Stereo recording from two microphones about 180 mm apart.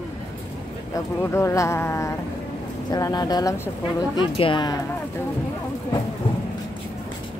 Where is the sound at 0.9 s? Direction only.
15° left (ahead or behind).